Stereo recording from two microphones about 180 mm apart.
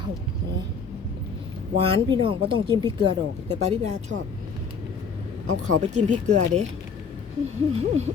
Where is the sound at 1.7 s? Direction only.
30° right (ahead or behind).